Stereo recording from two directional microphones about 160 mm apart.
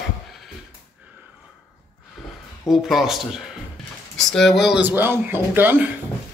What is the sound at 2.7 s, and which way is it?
Speech, centre (ahead or behind).